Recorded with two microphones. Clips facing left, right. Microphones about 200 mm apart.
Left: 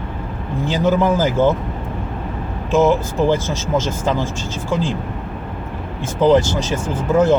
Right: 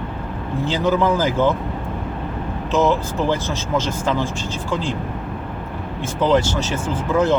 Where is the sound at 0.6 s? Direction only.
15° left (ahead or behind).